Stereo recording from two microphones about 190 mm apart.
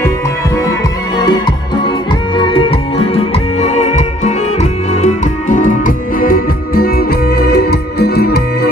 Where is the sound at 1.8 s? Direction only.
25° left (ahead or behind).